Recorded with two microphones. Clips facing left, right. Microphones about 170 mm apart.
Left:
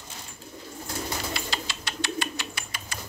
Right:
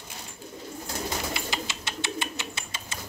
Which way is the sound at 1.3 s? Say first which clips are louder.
Right 1 dB; 20° right (ahead or behind).